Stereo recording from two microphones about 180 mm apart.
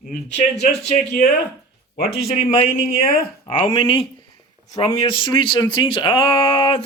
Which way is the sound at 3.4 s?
30° left (ahead or behind).